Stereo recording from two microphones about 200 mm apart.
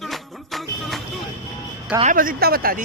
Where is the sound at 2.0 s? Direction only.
45° right (ahead or behind).